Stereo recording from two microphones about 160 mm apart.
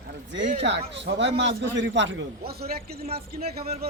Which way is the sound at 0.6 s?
90° right.